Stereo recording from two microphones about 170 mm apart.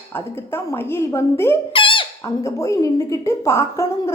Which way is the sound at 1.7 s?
30° left (ahead or behind).